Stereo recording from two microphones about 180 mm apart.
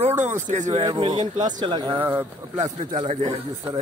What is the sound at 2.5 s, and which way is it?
Speech, 40° right (ahead or behind).